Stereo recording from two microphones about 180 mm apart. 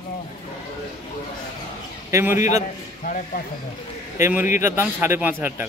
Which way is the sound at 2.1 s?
15° right (ahead or behind).